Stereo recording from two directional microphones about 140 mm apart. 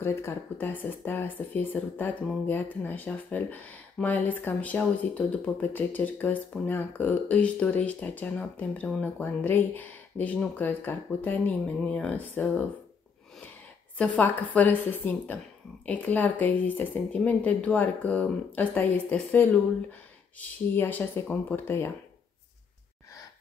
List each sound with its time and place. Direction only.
0.0 s speech: 15° left (ahead or behind)
13.9 s speech: 10° left (ahead or behind)